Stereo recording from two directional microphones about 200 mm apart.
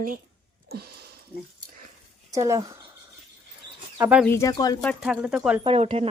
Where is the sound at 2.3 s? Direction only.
15° right (ahead or behind).